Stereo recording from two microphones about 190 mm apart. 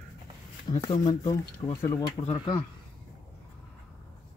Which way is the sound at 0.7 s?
20° left (ahead or behind).